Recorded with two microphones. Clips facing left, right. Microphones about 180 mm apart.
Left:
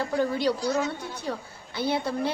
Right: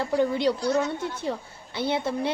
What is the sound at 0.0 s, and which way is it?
A woman's voice, 20° right (ahead or behind).